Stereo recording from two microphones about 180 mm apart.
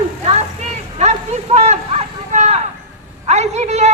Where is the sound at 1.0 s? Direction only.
40° right (ahead or behind).